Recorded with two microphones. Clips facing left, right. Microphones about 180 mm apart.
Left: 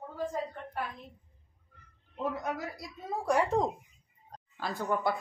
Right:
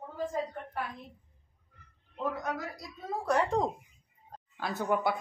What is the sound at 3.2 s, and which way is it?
Speech, 10° left (ahead or behind).